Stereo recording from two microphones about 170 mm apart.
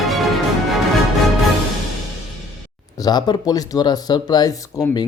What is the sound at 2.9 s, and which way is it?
Speech, 25° left (ahead or behind).